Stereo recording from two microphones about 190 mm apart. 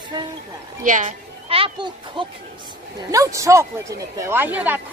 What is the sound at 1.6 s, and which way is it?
Speech, 25° right (ahead or behind).